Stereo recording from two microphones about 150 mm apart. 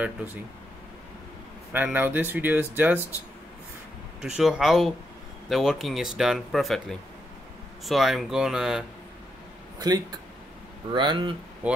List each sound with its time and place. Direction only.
1.7 s speech: 10° right (ahead or behind)
4.2 s speech: 5° right (ahead or behind)
9.8 s speech: 25° right (ahead or behind)
11.6 s speech: 10° right (ahead or behind)